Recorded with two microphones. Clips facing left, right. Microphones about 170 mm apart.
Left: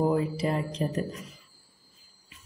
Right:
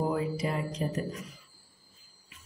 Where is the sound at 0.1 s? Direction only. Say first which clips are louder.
Left 4 dB; 35° left (ahead or behind).